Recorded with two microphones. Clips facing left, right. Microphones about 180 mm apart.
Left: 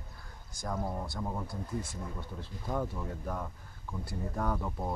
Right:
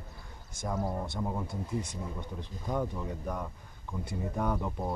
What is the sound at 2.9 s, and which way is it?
Speech, centre (ahead or behind).